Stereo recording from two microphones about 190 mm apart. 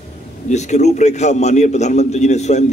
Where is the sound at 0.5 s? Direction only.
35° left (ahead or behind).